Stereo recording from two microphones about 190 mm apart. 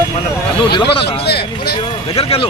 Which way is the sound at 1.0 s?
30° left (ahead or behind).